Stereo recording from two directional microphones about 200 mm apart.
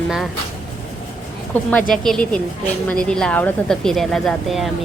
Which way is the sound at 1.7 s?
5° left (ahead or behind).